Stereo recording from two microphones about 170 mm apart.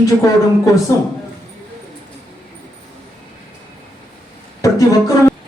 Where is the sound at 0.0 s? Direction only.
20° left (ahead or behind).